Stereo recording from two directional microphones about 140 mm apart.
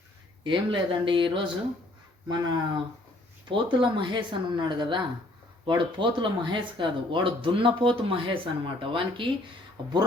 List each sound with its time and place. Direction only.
0.4 s speech: 35° right (ahead or behind)